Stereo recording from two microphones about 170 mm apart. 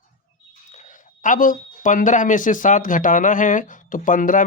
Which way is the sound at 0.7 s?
45° left (ahead or behind).